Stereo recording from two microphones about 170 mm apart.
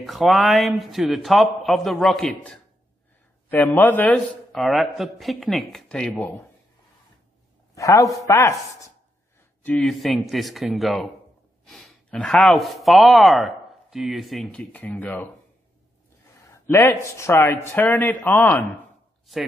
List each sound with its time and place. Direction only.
0.0 s a man's voice: centre (ahead or behind)
3.4 s a man's voice: 10° left (ahead or behind)
7.7 s speech: 20° left (ahead or behind)
9.7 s a man's voice: centre (ahead or behind)
16.4 s a man's voice: 15° left (ahead or behind)